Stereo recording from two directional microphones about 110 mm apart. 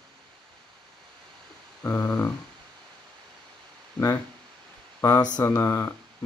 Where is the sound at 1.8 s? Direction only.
15° left (ahead or behind).